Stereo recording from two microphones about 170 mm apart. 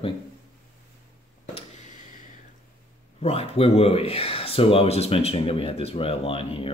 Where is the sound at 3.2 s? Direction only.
35° left (ahead or behind).